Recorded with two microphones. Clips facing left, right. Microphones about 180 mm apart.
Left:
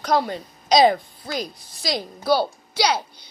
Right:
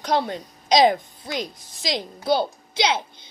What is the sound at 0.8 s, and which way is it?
A child's voice, 15° right (ahead or behind).